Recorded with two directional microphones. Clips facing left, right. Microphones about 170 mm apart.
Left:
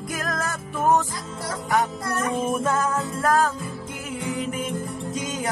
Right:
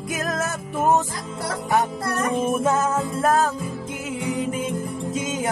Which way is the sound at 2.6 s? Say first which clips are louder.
Right 3 dB; 20° right (ahead or behind).